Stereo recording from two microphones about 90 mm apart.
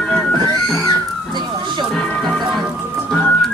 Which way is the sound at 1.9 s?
5° left (ahead or behind).